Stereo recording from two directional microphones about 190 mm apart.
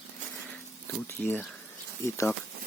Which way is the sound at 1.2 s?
10° left (ahead or behind).